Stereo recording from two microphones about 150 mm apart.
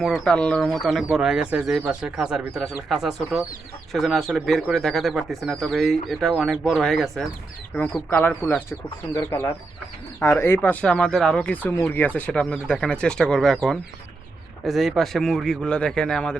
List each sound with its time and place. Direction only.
0.0 s speech: 5° left (ahead or behind)